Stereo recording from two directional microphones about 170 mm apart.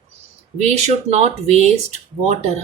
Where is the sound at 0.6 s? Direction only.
40° right (ahead or behind).